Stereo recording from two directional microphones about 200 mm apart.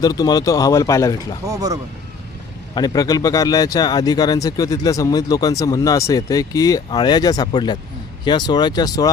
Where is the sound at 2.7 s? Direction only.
20° left (ahead or behind).